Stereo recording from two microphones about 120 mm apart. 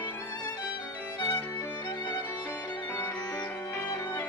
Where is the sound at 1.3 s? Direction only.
15° left (ahead or behind).